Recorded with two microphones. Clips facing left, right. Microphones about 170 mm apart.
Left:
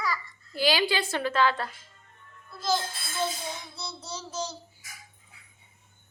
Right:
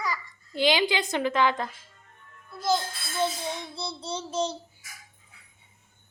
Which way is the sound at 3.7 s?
30° right (ahead or behind).